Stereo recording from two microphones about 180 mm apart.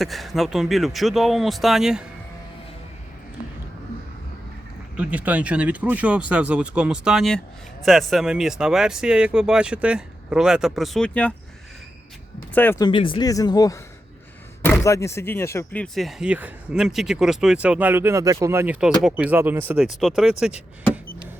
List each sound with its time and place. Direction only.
0.0 s speech: centre (ahead or behind)
4.9 s speech: 5° right (ahead or behind)
12.5 s speech: 10° left (ahead or behind)
12.8 s speech: 30° left (ahead or behind); by 20.3 s centre (ahead or behind)